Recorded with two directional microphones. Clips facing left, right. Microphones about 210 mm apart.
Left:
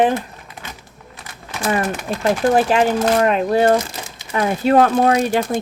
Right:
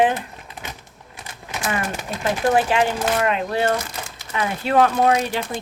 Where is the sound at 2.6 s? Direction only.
40° left (ahead or behind).